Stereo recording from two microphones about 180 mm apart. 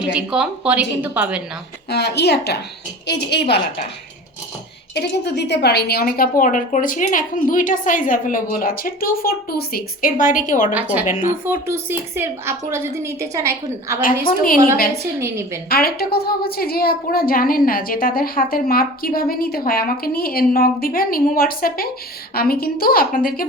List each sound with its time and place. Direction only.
0.0 s a woman's voice: 5° right (ahead or behind)
1.9 s a woman's voice: 65° left (ahead or behind)
4.9 s a woman's voice: 70° left (ahead or behind); by 10.8 s 45° left (ahead or behind)
10.8 s a woman's voice: 10° right (ahead or behind)
11.0 s a woman's voice: 40° left (ahead or behind)
11.4 s a woman's voice: 15° right (ahead or behind)
14.3 s a woman's voice: 55° left (ahead or behind)
14.9 s a woman's voice: 15° right (ahead or behind)
15.7 s a woman's voice: 60° left (ahead or behind)